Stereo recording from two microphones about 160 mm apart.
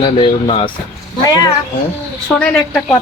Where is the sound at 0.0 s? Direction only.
35° left (ahead or behind).